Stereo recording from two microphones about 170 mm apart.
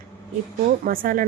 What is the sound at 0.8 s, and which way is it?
Speech, 55° right (ahead or behind).